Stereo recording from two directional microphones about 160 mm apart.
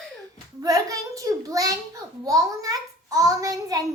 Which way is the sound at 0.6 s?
20° right (ahead or behind).